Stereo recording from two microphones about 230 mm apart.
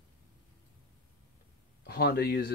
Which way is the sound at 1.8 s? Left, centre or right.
Left.